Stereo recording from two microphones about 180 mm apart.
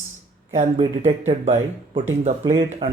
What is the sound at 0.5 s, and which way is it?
Speech, 40° right (ahead or behind).